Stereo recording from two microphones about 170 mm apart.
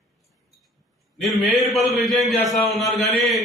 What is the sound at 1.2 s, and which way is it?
A man's voice, centre (ahead or behind).